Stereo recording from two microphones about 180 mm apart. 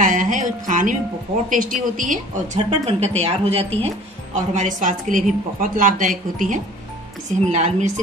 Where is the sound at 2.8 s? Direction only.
35° right (ahead or behind).